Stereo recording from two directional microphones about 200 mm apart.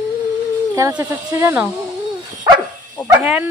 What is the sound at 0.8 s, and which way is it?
Speech, 10° right (ahead or behind).